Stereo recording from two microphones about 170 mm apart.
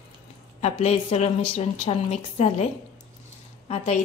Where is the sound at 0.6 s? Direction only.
40° left (ahead or behind).